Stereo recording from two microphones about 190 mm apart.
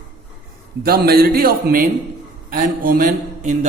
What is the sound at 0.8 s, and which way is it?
A man's voice, 55° right (ahead or behind).